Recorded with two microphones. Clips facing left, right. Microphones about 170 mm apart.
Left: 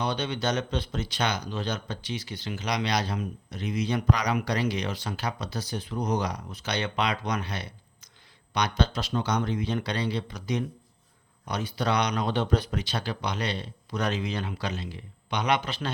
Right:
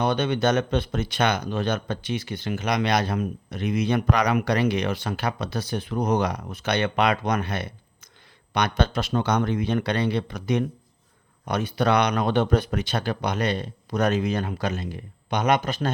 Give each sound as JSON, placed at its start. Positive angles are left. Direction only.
{"t": 0.0, "sound": "speech", "side_deg": -55}